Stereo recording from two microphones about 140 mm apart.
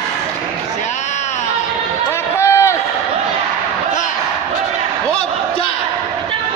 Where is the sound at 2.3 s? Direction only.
20° left (ahead or behind).